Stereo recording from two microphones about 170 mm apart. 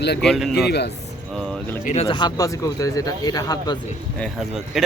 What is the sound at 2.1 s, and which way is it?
Speech, 25° left (ahead or behind).